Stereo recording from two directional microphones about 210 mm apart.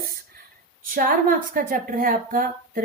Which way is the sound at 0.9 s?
40° right (ahead or behind).